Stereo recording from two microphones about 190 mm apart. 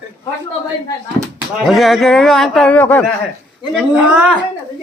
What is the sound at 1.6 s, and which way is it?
A man's voice, centre (ahead or behind).